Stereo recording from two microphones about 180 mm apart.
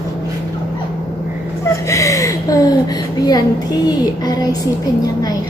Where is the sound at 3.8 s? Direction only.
20° left (ahead or behind).